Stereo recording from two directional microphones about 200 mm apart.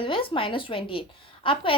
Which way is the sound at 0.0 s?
25° left (ahead or behind).